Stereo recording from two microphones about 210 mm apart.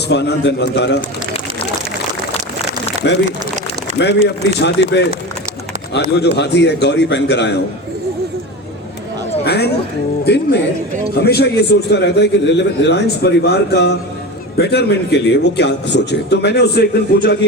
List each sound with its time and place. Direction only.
0.1 s a man's voice: 55° left (ahead or behind)
3.0 s a man's voice: 55° left (ahead or behind)
9.4 s a man's voice: 50° left (ahead or behind)